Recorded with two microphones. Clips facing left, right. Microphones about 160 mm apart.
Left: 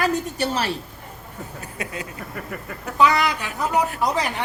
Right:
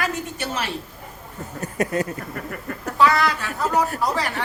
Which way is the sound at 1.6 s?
45° right (ahead or behind).